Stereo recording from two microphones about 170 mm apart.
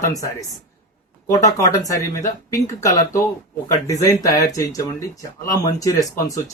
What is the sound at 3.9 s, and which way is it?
Speech, 20° left (ahead or behind).